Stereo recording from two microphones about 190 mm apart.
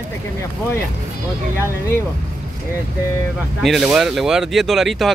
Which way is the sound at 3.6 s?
Centre (ahead or behind).